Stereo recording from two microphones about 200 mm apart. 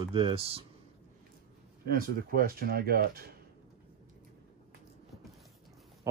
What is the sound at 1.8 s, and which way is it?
Speech, 45° right (ahead or behind).